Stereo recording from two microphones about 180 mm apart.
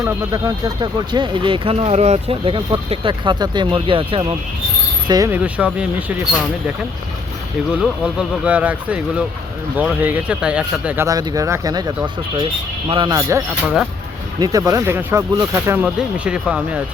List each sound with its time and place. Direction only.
0.0 s speech: 20° right (ahead or behind)
5.3 s speech: 5° right (ahead or behind)
7.7 s speech: 5° right (ahead or behind)